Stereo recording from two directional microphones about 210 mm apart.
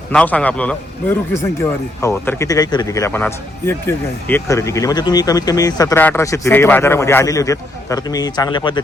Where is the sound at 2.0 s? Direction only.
15° left (ahead or behind).